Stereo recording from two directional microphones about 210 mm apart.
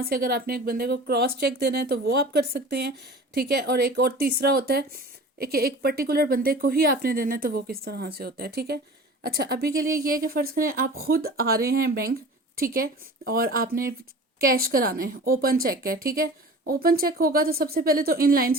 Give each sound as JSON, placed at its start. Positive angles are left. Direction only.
{"t": 0.0, "sound": "a woman's voice", "side_deg": -45}